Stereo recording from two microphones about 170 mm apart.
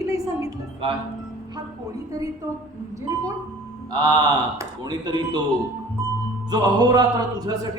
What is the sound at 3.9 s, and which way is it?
Speech, 25° right (ahead or behind).